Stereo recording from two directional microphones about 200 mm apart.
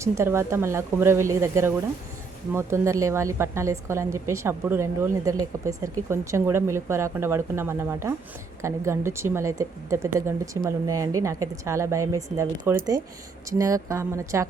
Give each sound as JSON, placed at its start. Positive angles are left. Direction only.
{"t": 0.0, "sound": "a woman's voice", "side_deg": -15}